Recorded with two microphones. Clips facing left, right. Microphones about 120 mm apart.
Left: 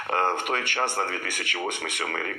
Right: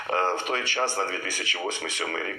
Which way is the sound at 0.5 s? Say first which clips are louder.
Even; 50° left (ahead or behind).